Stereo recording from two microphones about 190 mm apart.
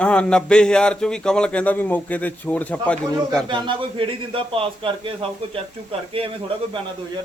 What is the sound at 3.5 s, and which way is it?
A man's voice, 25° right (ahead or behind).